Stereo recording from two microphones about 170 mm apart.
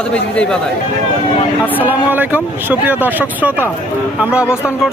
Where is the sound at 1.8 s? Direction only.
10° right (ahead or behind).